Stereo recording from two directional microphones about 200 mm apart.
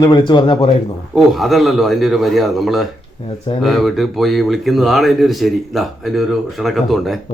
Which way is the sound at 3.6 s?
Centre (ahead or behind).